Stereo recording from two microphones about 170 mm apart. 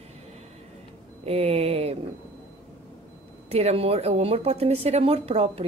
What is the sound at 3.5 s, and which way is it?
A woman's voice, 40° right (ahead or behind).